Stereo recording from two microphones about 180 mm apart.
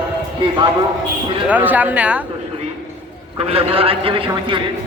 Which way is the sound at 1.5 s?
10° right (ahead or behind).